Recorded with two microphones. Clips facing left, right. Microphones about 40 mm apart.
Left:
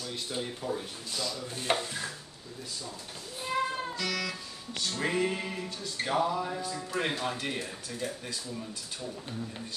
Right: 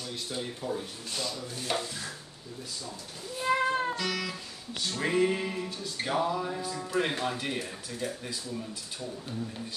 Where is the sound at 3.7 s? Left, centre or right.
Right.